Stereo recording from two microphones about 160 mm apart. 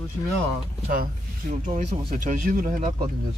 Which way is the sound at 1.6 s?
50° right (ahead or behind).